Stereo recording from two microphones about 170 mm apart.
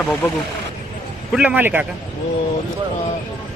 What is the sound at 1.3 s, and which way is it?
Speech, 5° right (ahead or behind).